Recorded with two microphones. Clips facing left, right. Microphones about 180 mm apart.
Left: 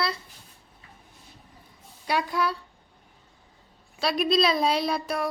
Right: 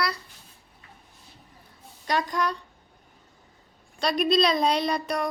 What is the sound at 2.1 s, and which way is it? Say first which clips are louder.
Speech: even; 10° left (ahead or behind).